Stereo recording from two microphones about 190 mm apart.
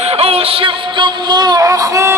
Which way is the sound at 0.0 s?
30° right (ahead or behind).